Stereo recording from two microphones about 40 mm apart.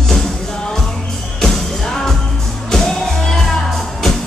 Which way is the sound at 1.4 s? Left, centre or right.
Centre.